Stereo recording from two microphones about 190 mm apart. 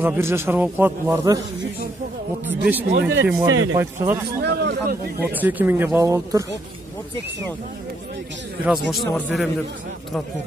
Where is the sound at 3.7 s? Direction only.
15° right (ahead or behind).